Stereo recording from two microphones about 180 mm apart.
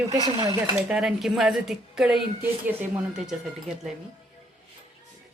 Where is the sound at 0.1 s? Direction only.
20° right (ahead or behind).